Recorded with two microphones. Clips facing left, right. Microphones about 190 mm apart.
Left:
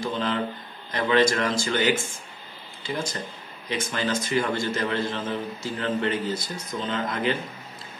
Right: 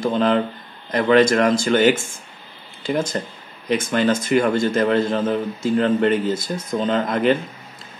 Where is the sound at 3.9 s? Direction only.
55° right (ahead or behind).